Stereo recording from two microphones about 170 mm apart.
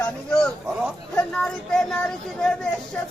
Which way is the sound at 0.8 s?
5° left (ahead or behind).